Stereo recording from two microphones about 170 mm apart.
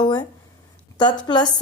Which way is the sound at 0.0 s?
25° left (ahead or behind).